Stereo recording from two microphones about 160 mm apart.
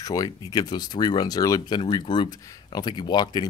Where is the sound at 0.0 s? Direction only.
20° left (ahead or behind).